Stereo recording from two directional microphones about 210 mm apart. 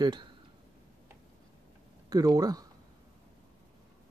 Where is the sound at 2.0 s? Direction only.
15° right (ahead or behind).